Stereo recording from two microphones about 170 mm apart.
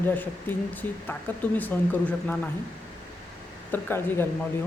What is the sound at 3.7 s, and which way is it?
Speech, 15° left (ahead or behind).